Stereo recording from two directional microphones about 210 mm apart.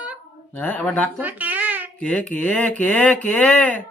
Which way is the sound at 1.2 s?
10° right (ahead or behind).